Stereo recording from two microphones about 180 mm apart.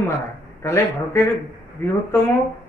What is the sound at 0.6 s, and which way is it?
A man's voice, 15° left (ahead or behind).